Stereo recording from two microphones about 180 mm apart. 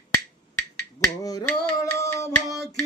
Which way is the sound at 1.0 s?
20° left (ahead or behind).